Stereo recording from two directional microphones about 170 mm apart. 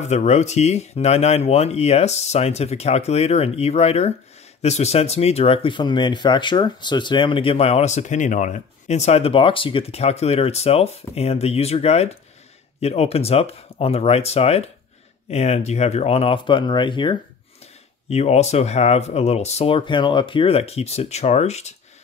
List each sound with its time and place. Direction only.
0.0 s speech: 40° left (ahead or behind)
18.1 s speech: 40° left (ahead or behind)